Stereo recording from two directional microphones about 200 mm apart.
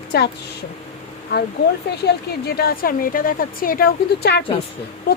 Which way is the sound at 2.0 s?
50° left (ahead or behind).